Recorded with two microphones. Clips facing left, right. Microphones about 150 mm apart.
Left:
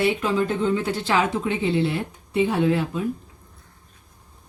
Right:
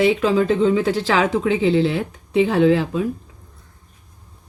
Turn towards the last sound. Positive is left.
turn(degrees=-90)